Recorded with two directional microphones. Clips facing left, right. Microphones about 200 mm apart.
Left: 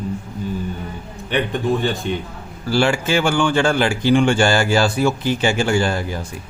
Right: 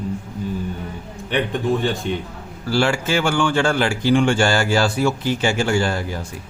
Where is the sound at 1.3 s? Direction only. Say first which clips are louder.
Left 1 dB; centre (ahead or behind).